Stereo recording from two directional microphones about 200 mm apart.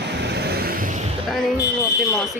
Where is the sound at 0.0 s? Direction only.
55° right (ahead or behind).